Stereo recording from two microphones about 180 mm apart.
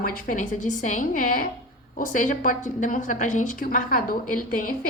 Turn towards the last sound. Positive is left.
turn(degrees=50)  # may be behind; listen again after turning